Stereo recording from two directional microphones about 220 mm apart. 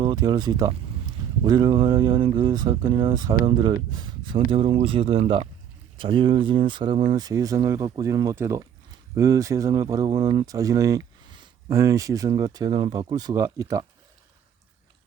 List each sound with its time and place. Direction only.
0.0 s speech: 20° right (ahead or behind)